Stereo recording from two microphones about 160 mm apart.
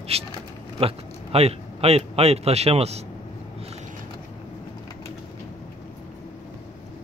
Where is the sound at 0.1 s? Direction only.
40° right (ahead or behind).